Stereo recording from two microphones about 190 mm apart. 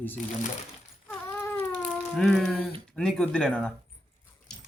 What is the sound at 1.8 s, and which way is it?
Speech, centre (ahead or behind).